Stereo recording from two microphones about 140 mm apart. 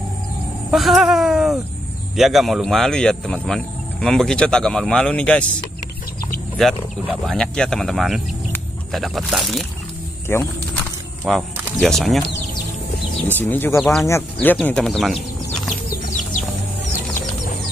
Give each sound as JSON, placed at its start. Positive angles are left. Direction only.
{"t": 0.7, "sound": "speech", "side_deg": 0}
{"t": 6.8, "sound": "speech", "side_deg": 5}
{"t": 10.2, "sound": "a sound", "side_deg": 15}
{"t": 11.2, "sound": "speech", "side_deg": 0}
{"t": 13.4, "sound": "speech", "side_deg": 15}